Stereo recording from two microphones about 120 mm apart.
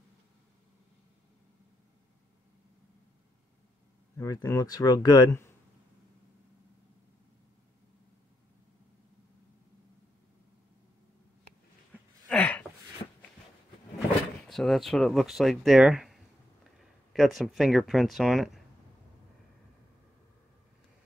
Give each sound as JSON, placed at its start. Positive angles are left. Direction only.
{"t": 4.2, "sound": "speech", "side_deg": 25}
{"t": 11.9, "sound": "a sound", "side_deg": 10}
{"t": 14.5, "sound": "speech", "side_deg": 0}